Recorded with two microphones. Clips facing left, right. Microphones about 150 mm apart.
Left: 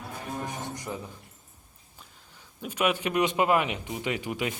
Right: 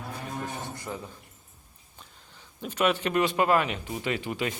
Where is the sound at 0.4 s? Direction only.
15° left (ahead or behind).